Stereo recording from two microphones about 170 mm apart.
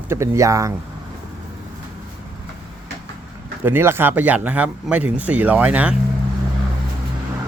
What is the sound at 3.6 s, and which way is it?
Speech, 15° right (ahead or behind).